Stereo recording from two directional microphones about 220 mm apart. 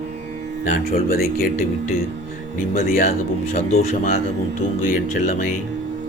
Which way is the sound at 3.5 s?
30° left (ahead or behind).